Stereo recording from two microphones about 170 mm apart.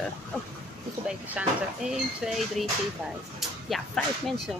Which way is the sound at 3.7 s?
Centre (ahead or behind).